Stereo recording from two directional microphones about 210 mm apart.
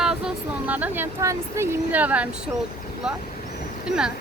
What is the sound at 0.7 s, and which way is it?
Speech, 10° right (ahead or behind).